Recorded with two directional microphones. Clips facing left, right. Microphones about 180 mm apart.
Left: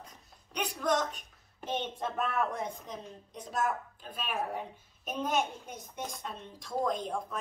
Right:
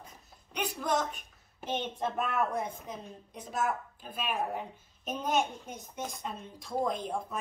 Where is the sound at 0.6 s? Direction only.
5° right (ahead or behind).